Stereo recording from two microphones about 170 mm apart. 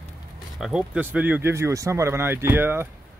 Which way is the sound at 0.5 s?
5° right (ahead or behind).